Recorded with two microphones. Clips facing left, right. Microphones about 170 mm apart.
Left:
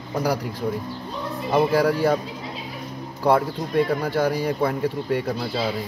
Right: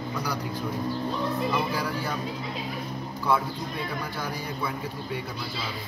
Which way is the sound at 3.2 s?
70° left (ahead or behind).